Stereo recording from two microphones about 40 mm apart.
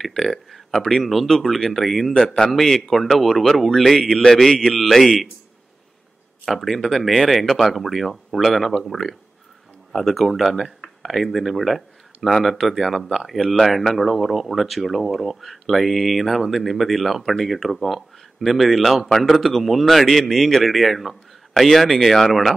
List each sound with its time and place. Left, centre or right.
0.0 s speech: centre
2.1 s a man's voice: centre
2.5 s speech: centre
6.4 s speech: centre